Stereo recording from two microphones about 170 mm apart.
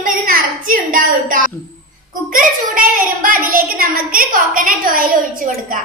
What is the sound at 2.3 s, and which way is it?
A woman's voice, 55° right (ahead or behind).